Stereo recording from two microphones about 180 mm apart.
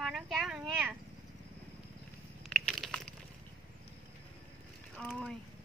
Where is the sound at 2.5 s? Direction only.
Centre (ahead or behind).